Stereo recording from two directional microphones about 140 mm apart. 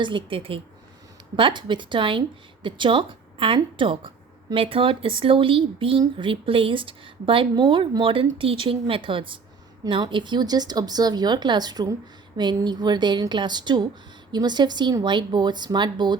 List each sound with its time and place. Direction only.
0.0 s speech: 35° right (ahead or behind)